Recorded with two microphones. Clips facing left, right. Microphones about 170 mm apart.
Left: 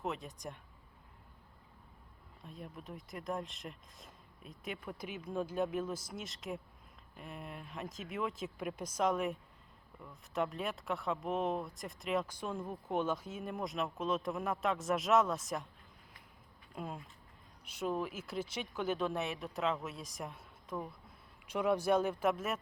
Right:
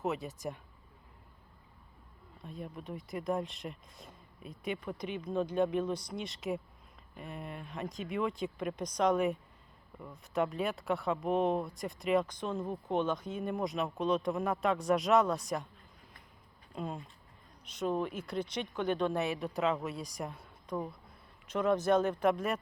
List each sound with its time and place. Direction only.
0.0 s speech: 5° right (ahead or behind)
2.4 s speech: centre (ahead or behind)
12.5 s speech: 25° right (ahead or behind)
12.9 s speech: 10° left (ahead or behind)
16.7 s speech: 5° left (ahead or behind)